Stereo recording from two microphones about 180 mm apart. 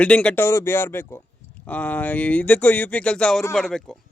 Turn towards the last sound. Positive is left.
turn(degrees=0)  # may be behind; listen again after turning